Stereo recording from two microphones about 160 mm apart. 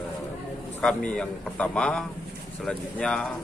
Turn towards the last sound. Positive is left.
turn(degrees=5)  # may be behind; listen again after turning